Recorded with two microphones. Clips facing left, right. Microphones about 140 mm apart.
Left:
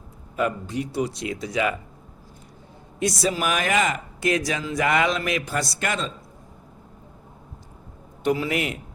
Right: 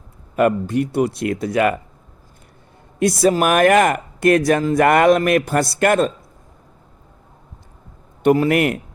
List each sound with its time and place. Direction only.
0.3 s speech: 60° right (ahead or behind)
3.0 s speech: 55° right (ahead or behind)
8.2 s speech: 55° right (ahead or behind)